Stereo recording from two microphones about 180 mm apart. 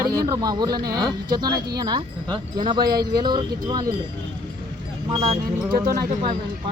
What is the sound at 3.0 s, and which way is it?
Speech, 60° right (ahead or behind).